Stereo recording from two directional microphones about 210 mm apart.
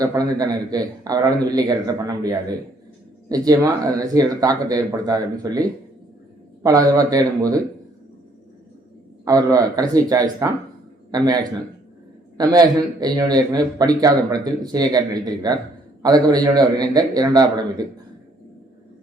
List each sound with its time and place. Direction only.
0.0 s a man's voice: 15° right (ahead or behind)
9.2 s a man's voice: 15° right (ahead or behind)
12.4 s a man's voice: 15° right (ahead or behind)